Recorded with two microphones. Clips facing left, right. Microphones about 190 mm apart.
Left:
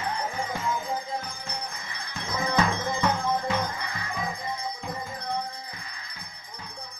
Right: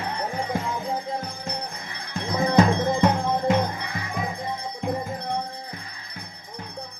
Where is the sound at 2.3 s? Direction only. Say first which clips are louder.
Right 7 dB; 35° right (ahead or behind).